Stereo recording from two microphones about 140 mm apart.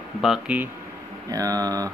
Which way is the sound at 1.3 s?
25° right (ahead or behind).